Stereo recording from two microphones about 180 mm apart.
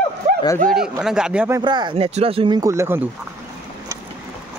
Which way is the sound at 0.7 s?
5° right (ahead or behind).